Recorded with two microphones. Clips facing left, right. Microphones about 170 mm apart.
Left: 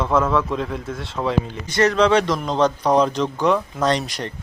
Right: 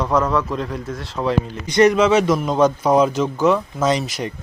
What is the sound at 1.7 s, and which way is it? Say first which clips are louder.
Speech: right 6 dB; 15° right (ahead or behind).